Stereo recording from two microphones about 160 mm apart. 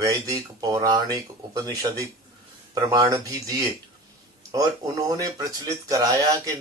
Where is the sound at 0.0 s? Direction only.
20° right (ahead or behind).